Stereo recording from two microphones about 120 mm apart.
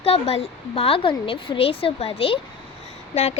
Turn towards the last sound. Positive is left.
turn(degrees=65)  # may be behind; listen again after turning